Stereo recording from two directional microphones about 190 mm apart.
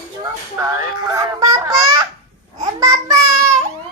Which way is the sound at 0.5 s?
15° right (ahead or behind).